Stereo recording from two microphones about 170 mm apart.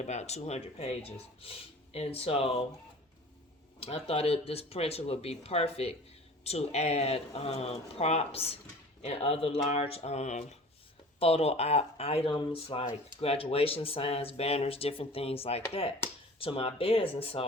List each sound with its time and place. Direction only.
0.0 s speech: 40° left (ahead or behind)
3.8 s speech: 35° left (ahead or behind)